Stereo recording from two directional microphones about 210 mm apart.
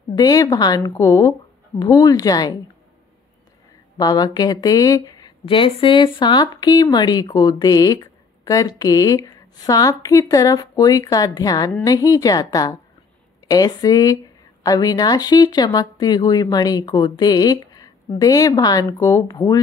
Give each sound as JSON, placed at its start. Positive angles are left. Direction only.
{"t": 0.1, "sound": "speech", "side_deg": 20}
{"t": 4.0, "sound": "a woman's voice", "side_deg": 20}